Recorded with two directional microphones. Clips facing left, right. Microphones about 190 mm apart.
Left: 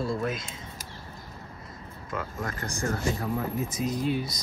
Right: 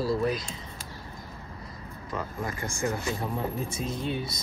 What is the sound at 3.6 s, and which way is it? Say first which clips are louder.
Speech: left 3 dB; 30° right (ahead or behind).